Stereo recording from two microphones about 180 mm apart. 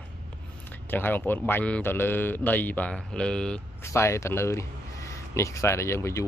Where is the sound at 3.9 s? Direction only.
15° left (ahead or behind).